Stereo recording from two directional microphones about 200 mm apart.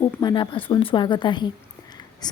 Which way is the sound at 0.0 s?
20° left (ahead or behind).